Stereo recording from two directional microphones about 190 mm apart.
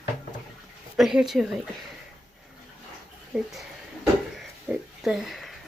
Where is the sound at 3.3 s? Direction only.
5° right (ahead or behind).